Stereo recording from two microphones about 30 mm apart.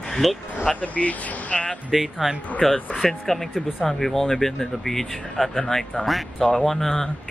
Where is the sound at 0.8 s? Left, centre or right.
Left.